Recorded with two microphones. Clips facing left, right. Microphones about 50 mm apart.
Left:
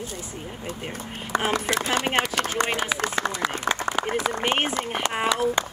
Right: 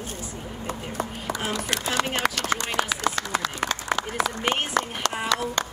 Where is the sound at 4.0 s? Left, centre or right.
Centre.